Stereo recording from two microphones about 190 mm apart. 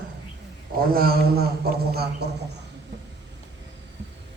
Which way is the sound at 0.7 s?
50° right (ahead or behind).